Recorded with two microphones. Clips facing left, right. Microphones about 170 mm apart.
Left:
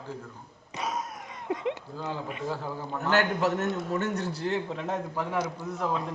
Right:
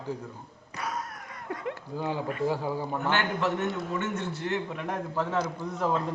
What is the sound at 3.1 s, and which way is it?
A man's voice, 40° left (ahead or behind).